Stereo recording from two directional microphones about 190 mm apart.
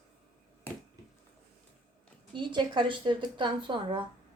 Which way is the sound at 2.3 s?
25° right (ahead or behind).